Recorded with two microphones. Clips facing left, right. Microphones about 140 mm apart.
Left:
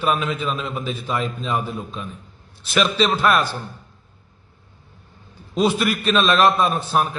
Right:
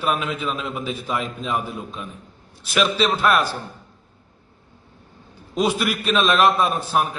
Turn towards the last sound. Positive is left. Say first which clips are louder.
# left 1 dB
turn(degrees=-5)  # may be behind; listen again after turning